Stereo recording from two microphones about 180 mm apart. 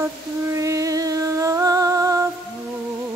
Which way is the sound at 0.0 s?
15° right (ahead or behind).